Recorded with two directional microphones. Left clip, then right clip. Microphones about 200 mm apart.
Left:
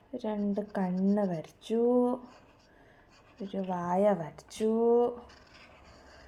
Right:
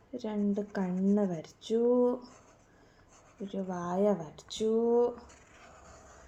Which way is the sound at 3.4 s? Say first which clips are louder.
Left 3 dB; 25° left (ahead or behind).